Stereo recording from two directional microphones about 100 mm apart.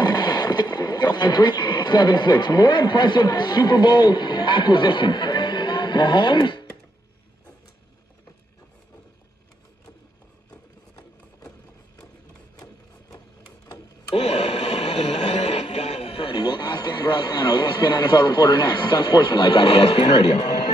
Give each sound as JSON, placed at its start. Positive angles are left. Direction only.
{"t": 0.0, "sound": "speech", "side_deg": 45}
{"t": 10.5, "sound": "a sound", "side_deg": 35}
{"t": 14.1, "sound": "radio", "side_deg": 90}
{"t": 16.2, "sound": "a man's voice", "side_deg": 50}